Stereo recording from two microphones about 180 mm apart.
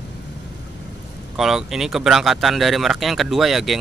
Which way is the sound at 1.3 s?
Centre (ahead or behind).